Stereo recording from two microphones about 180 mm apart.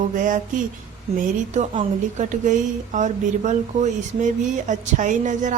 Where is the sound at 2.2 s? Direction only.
45° right (ahead or behind).